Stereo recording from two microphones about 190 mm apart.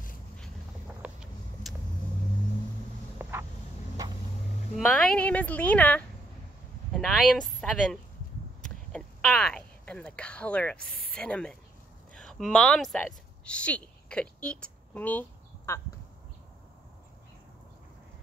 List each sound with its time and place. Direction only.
1.0 s vehicle: centre (ahead or behind)
3.2 s vehicle: 10° right (ahead or behind)
4.7 s speech: centre (ahead or behind)
8.6 s a sound: 5° left (ahead or behind)
11.1 s speech: 5° left (ahead or behind)